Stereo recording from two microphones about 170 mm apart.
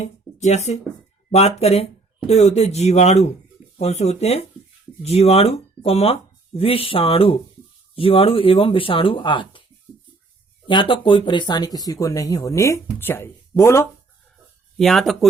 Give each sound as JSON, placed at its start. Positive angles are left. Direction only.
{"t": 0.0, "sound": "speech", "side_deg": 40}
{"t": 10.7, "sound": "speech", "side_deg": 30}
{"t": 14.8, "sound": "speech", "side_deg": 0}